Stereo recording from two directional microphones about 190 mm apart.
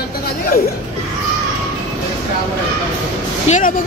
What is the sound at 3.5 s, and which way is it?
Speech, 40° left (ahead or behind).